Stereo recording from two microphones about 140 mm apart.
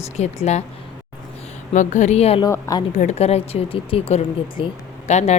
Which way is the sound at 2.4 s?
25° left (ahead or behind).